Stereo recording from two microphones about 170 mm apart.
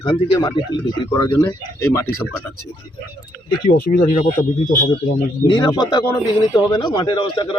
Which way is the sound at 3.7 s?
60° left (ahead or behind).